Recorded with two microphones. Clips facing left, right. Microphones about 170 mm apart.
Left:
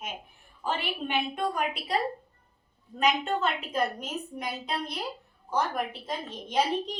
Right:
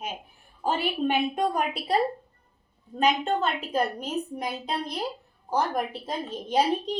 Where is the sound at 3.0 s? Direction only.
35° right (ahead or behind).